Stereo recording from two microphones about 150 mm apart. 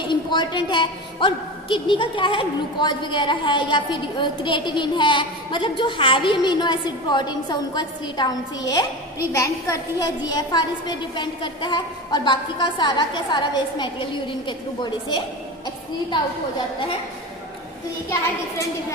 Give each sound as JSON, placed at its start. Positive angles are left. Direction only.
{"t": 0.1, "sound": "a woman's voice", "side_deg": 30}